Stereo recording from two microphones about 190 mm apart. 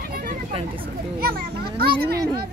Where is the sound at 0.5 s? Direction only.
30° right (ahead or behind).